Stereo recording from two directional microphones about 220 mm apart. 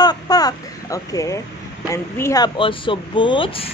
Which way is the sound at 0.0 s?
15° left (ahead or behind).